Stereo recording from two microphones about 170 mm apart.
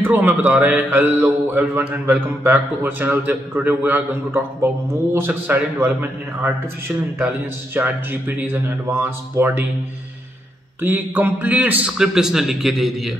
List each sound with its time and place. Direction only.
0.0 s a man's voice: 10° right (ahead or behind)
7.7 s a man's voice: 10° right (ahead or behind)
10.8 s a man's voice: 10° right (ahead or behind)